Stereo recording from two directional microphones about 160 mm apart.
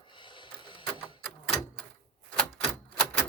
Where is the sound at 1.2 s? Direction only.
5° left (ahead or behind).